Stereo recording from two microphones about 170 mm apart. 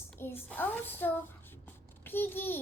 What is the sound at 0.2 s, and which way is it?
A child's voice, 15° left (ahead or behind).